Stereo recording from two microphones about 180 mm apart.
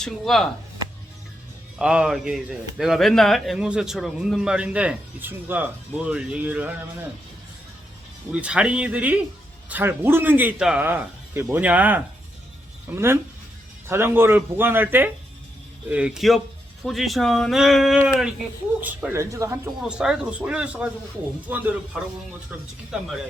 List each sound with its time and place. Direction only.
0.0 s a man's voice: centre (ahead or behind)
1.8 s a man's voice: 5° right (ahead or behind)
8.3 s a man's voice: 5° right (ahead or behind)
19.8 s a man's voice: 5° right (ahead or behind)
22.9 s a man's voice: centre (ahead or behind)